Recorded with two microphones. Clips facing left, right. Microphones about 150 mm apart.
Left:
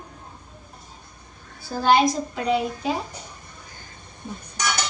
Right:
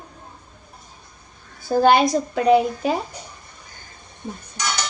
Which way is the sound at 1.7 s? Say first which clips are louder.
Right 3 dB; 55° right (ahead or behind).